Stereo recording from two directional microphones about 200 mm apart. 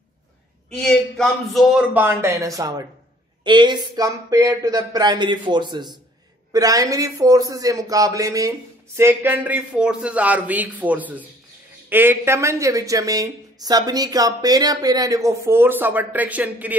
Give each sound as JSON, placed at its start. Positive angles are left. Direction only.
{"t": 0.7, "sound": "a man's voice", "side_deg": 5}